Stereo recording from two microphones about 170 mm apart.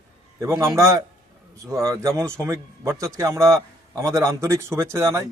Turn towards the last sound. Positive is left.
turn(degrees=-15)  # may be behind; listen again after turning